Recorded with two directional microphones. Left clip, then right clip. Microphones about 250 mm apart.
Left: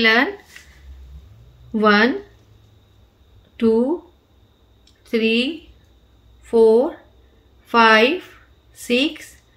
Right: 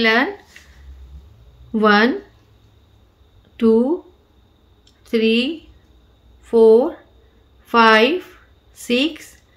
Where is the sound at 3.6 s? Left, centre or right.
Centre.